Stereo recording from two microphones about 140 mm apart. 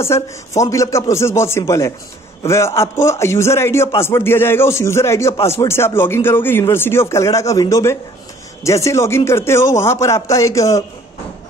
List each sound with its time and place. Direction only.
0.0 s a man's voice: 20° left (ahead or behind)